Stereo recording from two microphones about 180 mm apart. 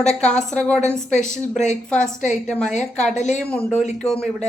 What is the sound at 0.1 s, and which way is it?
Speech, 40° left (ahead or behind).